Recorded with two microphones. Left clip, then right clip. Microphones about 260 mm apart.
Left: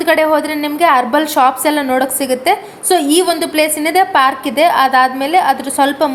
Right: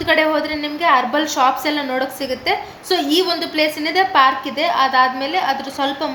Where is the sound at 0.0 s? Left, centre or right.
Left.